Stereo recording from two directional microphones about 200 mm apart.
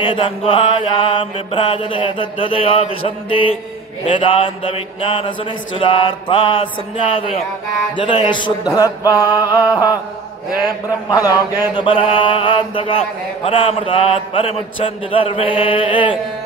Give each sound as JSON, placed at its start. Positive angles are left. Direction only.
{"t": 0.0, "sound": "mantra", "side_deg": 25}